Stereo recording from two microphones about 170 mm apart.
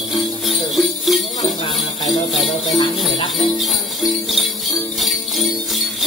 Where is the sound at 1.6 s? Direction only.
35° left (ahead or behind).